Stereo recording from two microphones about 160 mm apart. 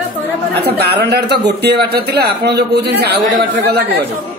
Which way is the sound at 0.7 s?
90° right.